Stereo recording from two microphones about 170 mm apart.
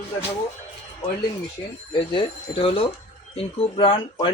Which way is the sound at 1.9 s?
30° left (ahead or behind).